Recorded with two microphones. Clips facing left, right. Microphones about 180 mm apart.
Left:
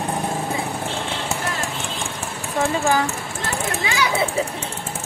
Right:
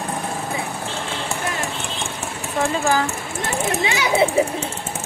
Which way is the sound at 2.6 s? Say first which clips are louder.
Even; 10° left (ahead or behind).